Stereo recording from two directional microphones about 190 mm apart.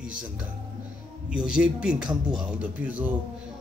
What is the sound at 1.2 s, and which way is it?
A man's voice, 5° right (ahead or behind).